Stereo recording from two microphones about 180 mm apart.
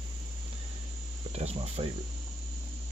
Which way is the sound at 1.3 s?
35° right (ahead or behind).